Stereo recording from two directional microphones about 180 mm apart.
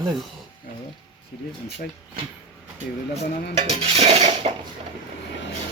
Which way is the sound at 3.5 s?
35° right (ahead or behind).